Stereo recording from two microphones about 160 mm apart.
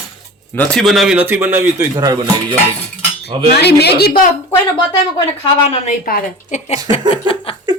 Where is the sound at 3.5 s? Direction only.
90° left.